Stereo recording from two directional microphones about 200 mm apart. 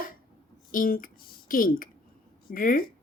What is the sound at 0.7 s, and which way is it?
A woman's voice, 45° left (ahead or behind).